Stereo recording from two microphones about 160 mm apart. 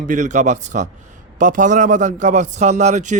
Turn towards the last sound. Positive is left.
turn(degrees=-45)  # may be behind; listen again after turning